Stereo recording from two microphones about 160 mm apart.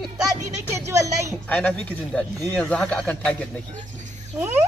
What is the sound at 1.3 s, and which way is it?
Speech, 10° left (ahead or behind).